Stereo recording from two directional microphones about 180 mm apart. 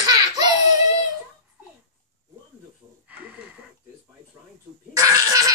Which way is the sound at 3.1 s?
10° right (ahead or behind).